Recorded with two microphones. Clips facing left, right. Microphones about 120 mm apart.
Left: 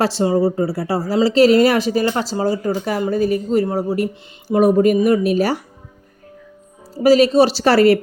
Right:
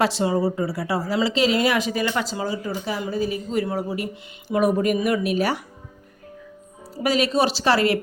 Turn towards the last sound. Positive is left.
turn(degrees=40)  # may be behind; listen again after turning